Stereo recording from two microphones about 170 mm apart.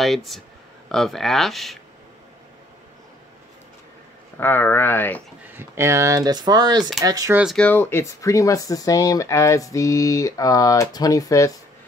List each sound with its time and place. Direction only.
0.0 s speech: centre (ahead or behind)
4.4 s speech: 10° left (ahead or behind)
5.5 s speech: 15° right (ahead or behind)
7.5 s speech: 10° left (ahead or behind)